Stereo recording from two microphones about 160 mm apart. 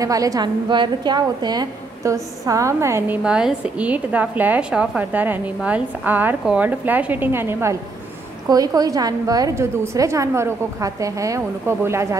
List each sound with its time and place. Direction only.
0.0 s a woman's voice: 20° right (ahead or behind)
3.3 s a woman's voice: 5° right (ahead or behind)